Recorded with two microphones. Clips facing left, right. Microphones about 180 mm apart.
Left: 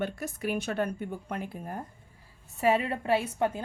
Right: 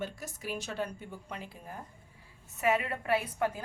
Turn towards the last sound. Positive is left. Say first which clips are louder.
# left 3 dB
turn(degrees=25)  # may be behind; listen again after turning